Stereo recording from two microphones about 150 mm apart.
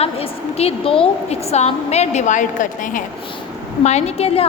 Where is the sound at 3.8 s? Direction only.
45° left (ahead or behind).